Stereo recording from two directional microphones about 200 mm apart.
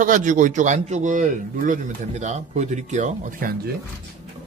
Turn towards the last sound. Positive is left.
turn(degrees=-45)  # may be behind; listen again after turning